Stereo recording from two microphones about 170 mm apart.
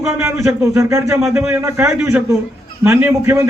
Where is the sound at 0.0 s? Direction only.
15° right (ahead or behind).